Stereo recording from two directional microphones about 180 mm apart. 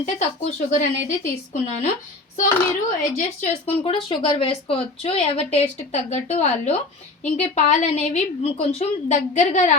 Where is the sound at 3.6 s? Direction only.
30° left (ahead or behind).